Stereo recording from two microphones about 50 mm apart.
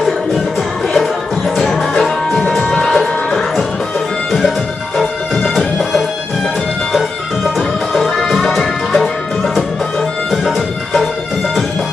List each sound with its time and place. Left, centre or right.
0.9 s music: centre
4.9 s music: centre
7.5 s music: centre